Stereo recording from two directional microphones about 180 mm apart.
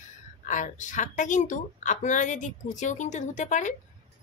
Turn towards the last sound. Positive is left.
turn(degrees=45)  # may be behind; listen again after turning